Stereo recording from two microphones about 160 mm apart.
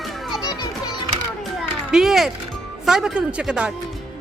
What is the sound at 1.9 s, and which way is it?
Speech, centre (ahead or behind).